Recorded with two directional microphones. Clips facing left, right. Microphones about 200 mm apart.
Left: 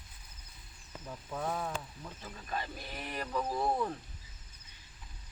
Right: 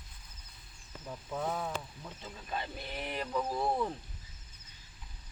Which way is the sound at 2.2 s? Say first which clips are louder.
Even; 20° right (ahead or behind).